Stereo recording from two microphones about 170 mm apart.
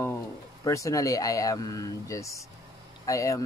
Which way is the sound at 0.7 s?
20° left (ahead or behind).